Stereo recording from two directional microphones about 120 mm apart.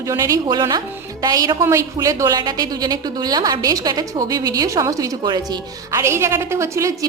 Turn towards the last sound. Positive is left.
turn(degrees=-25)  # may be behind; listen again after turning